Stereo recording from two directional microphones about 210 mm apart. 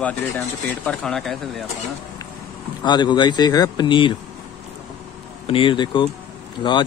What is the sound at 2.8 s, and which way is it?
Speech, 20° left (ahead or behind).